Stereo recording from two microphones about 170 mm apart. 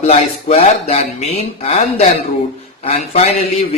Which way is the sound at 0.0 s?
40° left (ahead or behind).